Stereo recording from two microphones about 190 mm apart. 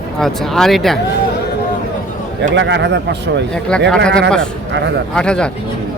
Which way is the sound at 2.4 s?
70° right (ahead or behind).